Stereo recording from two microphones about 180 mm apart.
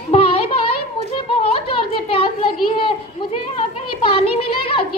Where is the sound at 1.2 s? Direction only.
30° left (ahead or behind).